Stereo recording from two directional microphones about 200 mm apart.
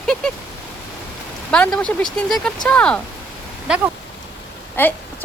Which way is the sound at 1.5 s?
5° left (ahead or behind).